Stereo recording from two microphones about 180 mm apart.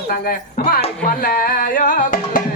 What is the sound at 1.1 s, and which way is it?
Music, 55° left (ahead or behind).